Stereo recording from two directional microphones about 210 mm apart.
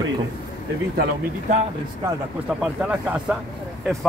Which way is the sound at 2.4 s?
5° right (ahead or behind).